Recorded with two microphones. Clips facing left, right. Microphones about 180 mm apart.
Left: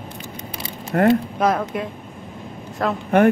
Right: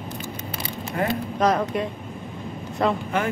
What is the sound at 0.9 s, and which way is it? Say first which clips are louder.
Speech: left 9 dB; 60° left (ahead or behind).